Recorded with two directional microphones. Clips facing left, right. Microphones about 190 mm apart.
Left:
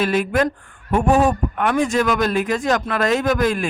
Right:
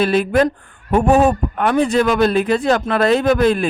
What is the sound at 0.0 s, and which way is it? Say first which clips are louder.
Speech: right 4 dB; 35° right (ahead or behind).